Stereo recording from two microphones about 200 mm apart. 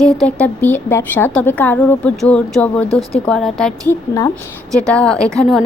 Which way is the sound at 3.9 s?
15° left (ahead or behind).